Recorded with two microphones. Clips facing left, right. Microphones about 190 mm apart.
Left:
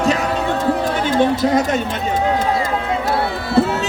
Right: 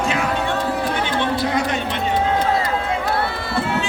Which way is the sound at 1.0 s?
45° left (ahead or behind).